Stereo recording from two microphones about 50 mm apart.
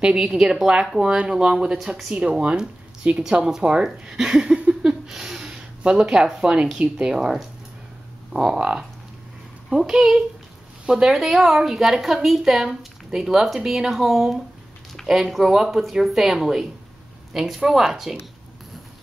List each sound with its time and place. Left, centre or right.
0.0 s speech: centre
1.8 s a woman's voice: centre
2.4 s speech: centre
9.8 s a woman's voice: centre